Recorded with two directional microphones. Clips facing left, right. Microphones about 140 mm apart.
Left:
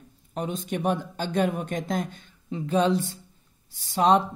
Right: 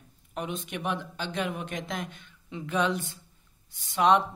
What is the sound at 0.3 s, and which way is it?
Speech, 35° left (ahead or behind).